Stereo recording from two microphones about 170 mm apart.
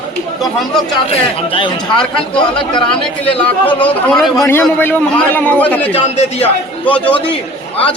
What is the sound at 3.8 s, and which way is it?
A man's voice, 5° left (ahead or behind).